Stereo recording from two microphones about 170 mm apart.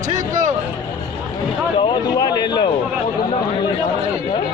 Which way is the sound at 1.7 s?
30° left (ahead or behind).